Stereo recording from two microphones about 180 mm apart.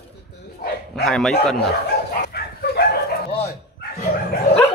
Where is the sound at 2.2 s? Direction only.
60° left (ahead or behind).